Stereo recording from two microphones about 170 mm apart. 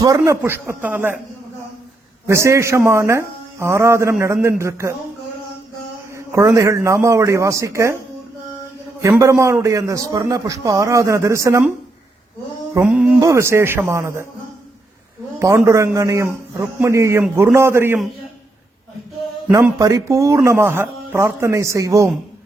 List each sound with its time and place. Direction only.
0.0 s a man's voice: 20° right (ahead or behind)
2.2 s a man's voice: 15° right (ahead or behind)
6.1 s a man's voice: 15° right (ahead or behind)
9.0 s a man's voice: 20° right (ahead or behind)
12.7 s music: 5° right (ahead or behind)
13.1 s a man's voice: 20° right (ahead or behind)
15.4 s a man's voice: 15° right (ahead or behind)
19.5 s a man's voice: 15° right (ahead or behind)